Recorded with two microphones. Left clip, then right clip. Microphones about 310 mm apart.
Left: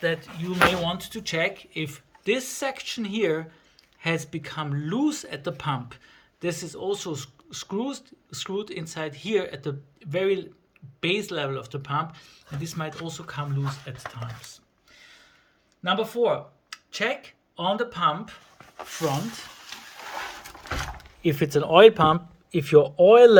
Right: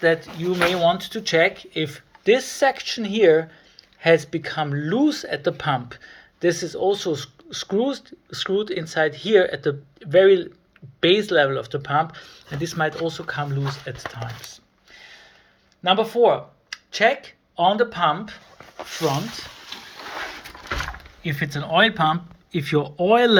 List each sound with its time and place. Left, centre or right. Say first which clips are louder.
0.0 s speech: right 8 dB; centre
14.5 s a sound: right 6 dB; centre
15.8 s speech: right 6 dB; centre
21.2 s speech: left 5 dB; left